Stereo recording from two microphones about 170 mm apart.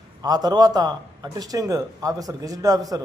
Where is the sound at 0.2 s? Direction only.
25° right (ahead or behind).